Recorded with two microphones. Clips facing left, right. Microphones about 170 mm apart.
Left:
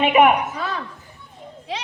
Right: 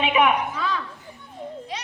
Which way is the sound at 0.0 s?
50° left (ahead or behind).